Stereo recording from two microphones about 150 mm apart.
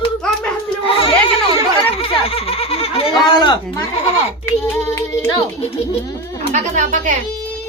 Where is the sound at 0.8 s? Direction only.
35° left (ahead or behind).